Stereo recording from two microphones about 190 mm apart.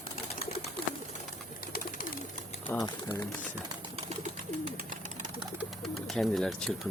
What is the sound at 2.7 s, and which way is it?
Speech, 20° left (ahead or behind).